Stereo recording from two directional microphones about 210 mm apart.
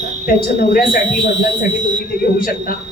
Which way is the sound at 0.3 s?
45° left (ahead or behind).